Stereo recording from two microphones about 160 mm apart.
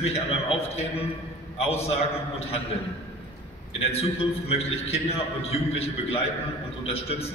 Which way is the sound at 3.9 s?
40° left (ahead or behind).